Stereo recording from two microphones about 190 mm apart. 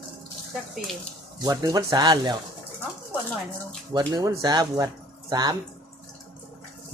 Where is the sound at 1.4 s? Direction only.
20° right (ahead or behind).